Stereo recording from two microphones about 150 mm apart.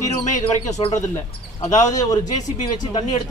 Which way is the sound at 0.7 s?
50° left (ahead or behind).